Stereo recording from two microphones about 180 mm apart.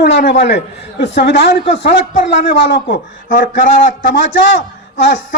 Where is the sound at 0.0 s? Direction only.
70° left (ahead or behind).